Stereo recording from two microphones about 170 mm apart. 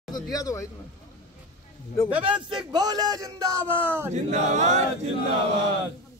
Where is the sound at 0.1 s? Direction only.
20° left (ahead or behind).